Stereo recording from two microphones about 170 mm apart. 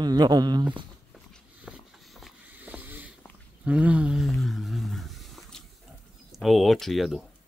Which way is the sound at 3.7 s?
5° right (ahead or behind).